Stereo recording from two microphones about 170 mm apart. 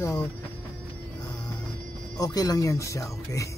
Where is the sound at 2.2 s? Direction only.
20° left (ahead or behind).